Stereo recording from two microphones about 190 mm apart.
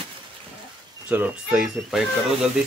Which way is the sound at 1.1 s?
10° right (ahead or behind).